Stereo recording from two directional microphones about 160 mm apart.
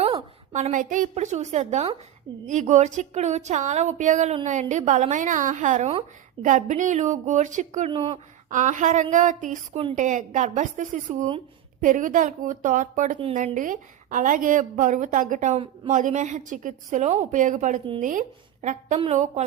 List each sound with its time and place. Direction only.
0.5 s a woman's voice: 50° right (ahead or behind)
7.9 s a woman's voice: 30° right (ahead or behind)
8.4 s a woman's voice: 50° right (ahead or behind)
15.5 s a woman's voice: 35° right (ahead or behind)
15.9 s a woman's voice: 50° right (ahead or behind)